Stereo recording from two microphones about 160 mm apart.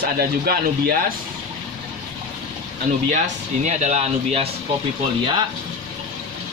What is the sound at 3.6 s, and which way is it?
Speech, 45° right (ahead or behind).